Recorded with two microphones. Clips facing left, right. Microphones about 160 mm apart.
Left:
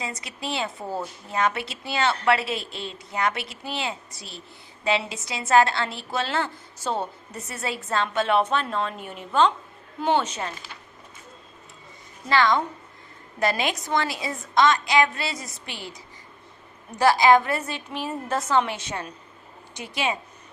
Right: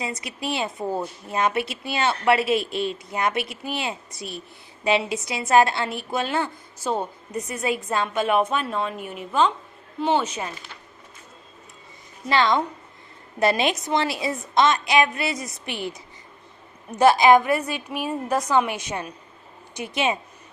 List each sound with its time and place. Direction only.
0.2 s speech: 25° left (ahead or behind)
0.5 s a woman's voice: 20° right (ahead or behind)
3.5 s speech: 25° left (ahead or behind)
3.8 s a woman's voice: 20° right (ahead or behind)
12.3 s a woman's voice: 20° right (ahead or behind)
17.0 s a woman's voice: 20° right (ahead or behind)